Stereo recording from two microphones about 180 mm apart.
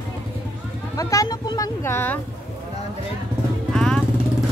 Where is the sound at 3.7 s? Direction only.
5° left (ahead or behind).